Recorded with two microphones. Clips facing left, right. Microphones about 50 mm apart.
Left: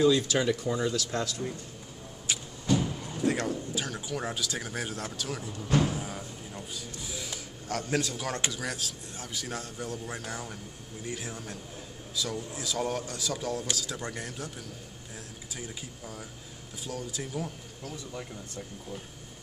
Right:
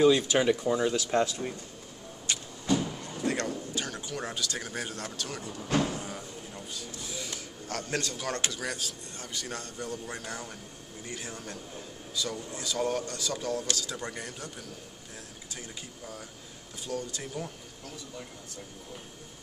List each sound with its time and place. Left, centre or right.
0.0 s speech: right
2.3 s vehicle: centre
2.8 s a sound: centre
5.8 s a man's voice: centre
15.5 s a man's voice: centre